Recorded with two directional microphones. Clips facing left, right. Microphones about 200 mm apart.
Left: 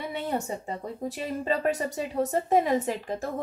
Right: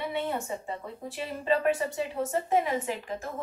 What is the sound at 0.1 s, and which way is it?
A woman's voice, 40° left (ahead or behind).